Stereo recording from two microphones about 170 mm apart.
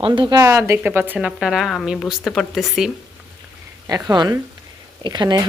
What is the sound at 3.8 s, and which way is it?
Speech, 20° right (ahead or behind).